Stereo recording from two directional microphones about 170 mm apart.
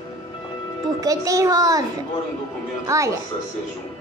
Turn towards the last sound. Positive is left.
turn(degrees=-20)  # may be behind; listen again after turning